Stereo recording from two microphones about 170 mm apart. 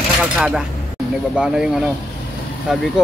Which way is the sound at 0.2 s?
5° right (ahead or behind).